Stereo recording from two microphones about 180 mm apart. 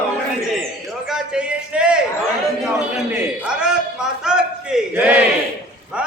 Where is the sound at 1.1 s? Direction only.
5° right (ahead or behind).